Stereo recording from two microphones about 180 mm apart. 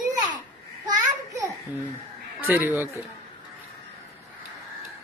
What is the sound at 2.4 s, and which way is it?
Speech, 10° right (ahead or behind).